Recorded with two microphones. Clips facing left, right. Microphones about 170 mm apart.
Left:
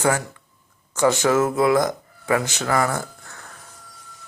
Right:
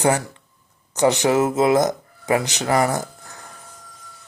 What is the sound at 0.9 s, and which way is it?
Speech, 20° right (ahead or behind).